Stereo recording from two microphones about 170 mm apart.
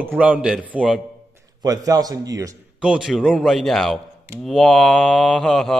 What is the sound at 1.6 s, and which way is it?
Speech, 20° right (ahead or behind).